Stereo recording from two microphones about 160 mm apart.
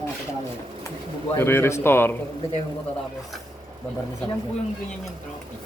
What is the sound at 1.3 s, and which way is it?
Speech, 15° left (ahead or behind).